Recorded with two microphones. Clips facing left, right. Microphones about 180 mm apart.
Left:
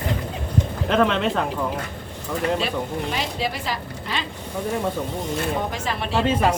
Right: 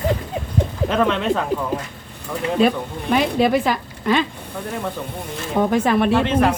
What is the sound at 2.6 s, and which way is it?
Speech, 55° right (ahead or behind).